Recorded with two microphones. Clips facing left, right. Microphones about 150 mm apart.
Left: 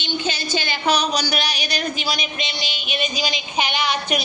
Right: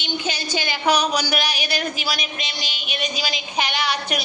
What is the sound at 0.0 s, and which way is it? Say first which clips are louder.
A woman's voice: left 1 dB; 10° right (ahead or behind).